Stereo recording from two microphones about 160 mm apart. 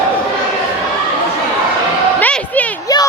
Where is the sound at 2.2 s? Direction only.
10° left (ahead or behind).